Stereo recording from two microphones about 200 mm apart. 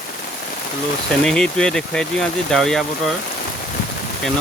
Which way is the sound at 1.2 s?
5° left (ahead or behind).